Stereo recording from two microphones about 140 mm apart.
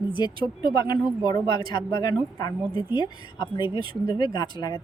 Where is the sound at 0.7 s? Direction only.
30° left (ahead or behind).